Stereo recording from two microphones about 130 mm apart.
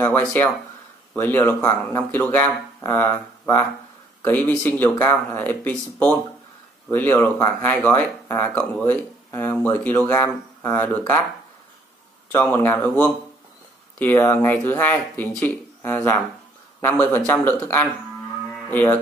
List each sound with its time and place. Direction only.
0.0 s speech: 15° left (ahead or behind)
12.3 s speech: 15° left (ahead or behind)